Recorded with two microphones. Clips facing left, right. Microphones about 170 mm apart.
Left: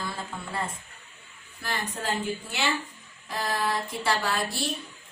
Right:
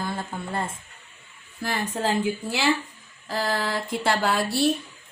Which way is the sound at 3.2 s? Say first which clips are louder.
Right 2 dB; 75° right (ahead or behind).